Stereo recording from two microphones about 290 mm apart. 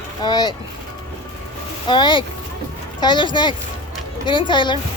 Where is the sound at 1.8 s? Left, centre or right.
Centre.